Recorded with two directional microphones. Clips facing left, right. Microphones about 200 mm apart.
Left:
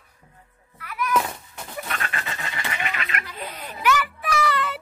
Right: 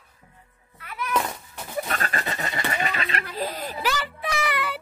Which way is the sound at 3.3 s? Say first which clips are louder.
Right 6 dB; 35° right (ahead or behind).